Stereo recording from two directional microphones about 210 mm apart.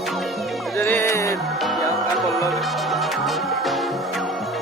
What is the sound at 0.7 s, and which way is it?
Music, 10° left (ahead or behind).